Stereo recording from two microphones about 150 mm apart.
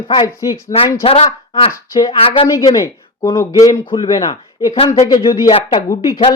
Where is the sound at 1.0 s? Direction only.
40° left (ahead or behind).